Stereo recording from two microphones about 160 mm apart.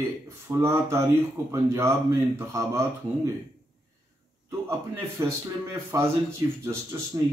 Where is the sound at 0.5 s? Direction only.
15° right (ahead or behind).